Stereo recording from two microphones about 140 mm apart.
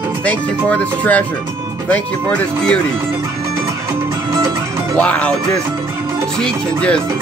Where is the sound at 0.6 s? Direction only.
10° left (ahead or behind).